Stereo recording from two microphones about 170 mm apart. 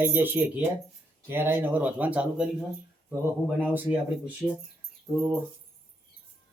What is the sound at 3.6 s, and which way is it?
Speech, 10° right (ahead or behind).